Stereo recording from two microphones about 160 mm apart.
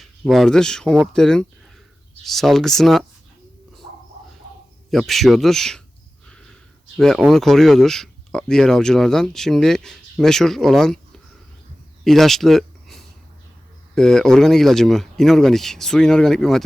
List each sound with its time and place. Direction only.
0.0 s speech: centre (ahead or behind)
4.9 s speech: centre (ahead or behind)
6.9 s speech: centre (ahead or behind)